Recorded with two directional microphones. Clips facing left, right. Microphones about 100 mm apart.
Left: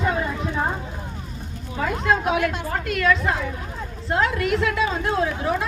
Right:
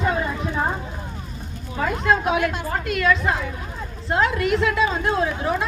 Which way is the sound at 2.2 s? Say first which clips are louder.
Right 1 dB; 20° right (ahead or behind).